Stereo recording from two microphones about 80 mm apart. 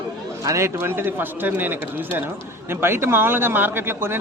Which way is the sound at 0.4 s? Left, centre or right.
Right.